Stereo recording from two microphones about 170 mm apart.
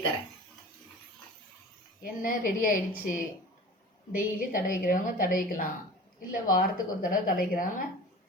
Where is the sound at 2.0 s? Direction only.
55° left (ahead or behind).